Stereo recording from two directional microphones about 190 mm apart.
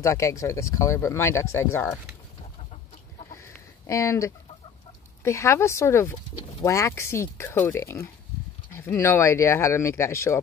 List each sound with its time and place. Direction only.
0.0 s speech: 15° left (ahead or behind)
3.3 s chicken: 15° left (ahead or behind)
5.2 s speech: 15° left (ahead or behind)